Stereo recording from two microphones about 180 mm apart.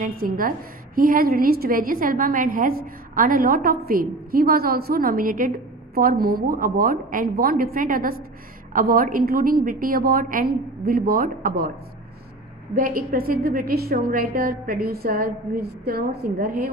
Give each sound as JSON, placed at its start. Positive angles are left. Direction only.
{"t": 0.2, "sound": "a woman's voice", "side_deg": -50}
{"t": 12.7, "sound": "a woman's voice", "side_deg": -55}